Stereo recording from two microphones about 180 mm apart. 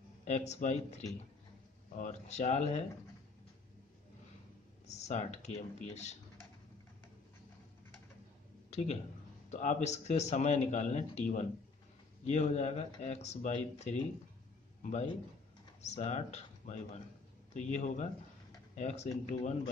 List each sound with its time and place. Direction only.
0.2 s speech: 40° left (ahead or behind)
4.8 s speech: 40° left (ahead or behind)
8.6 s a sound: 35° left (ahead or behind)
9.5 s a man's voice: 40° left (ahead or behind)